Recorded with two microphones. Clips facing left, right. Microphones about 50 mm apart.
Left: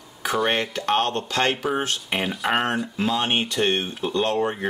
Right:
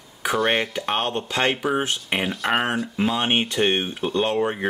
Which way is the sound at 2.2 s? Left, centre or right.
Centre.